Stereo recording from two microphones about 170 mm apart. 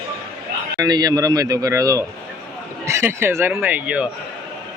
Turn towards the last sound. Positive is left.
turn(degrees=-10)  # may be behind; listen again after turning